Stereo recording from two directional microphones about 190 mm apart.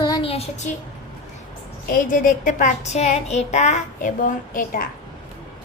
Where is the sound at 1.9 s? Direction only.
45° left (ahead or behind).